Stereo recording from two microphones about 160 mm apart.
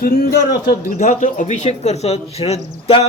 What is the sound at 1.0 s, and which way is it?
A man's voice, 50° left (ahead or behind).